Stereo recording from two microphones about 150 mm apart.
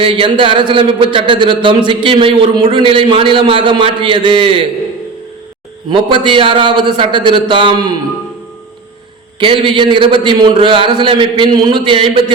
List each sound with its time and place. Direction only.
0.0 s a man's voice: 35° right (ahead or behind)
5.9 s a man's voice: 30° right (ahead or behind)
9.4 s a man's voice: 35° right (ahead or behind)